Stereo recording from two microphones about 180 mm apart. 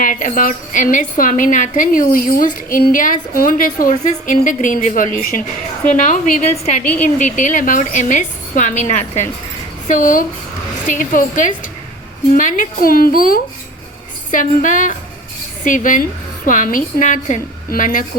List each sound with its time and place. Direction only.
0.0 s a woman's voice: 45° left (ahead or behind)
6.8 s a woman's voice: 5° left (ahead or behind)
7.2 s a woman's voice: 45° left (ahead or behind)